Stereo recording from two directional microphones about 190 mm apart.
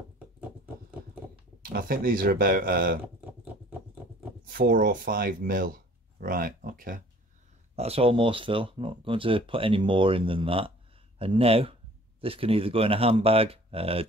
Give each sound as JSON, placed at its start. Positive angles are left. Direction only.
{"t": 1.6, "sound": "speech", "side_deg": -50}
{"t": 3.0, "sound": "a sound", "side_deg": -10}
{"t": 4.5, "sound": "speech", "side_deg": -45}
{"t": 7.7, "sound": "speech", "side_deg": -30}